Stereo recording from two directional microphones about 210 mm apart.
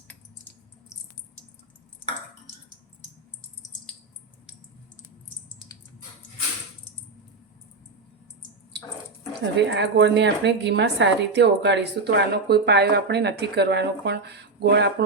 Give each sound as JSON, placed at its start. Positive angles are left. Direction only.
{"t": 9.6, "sound": "a woman's voice", "side_deg": -55}